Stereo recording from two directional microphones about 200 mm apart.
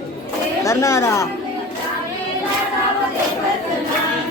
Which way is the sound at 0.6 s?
15° left (ahead or behind).